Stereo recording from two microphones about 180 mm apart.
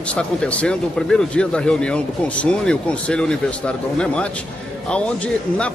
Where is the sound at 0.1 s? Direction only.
5° left (ahead or behind).